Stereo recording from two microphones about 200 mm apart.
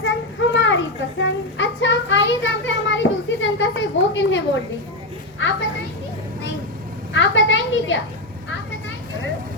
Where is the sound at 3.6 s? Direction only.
65° left (ahead or behind).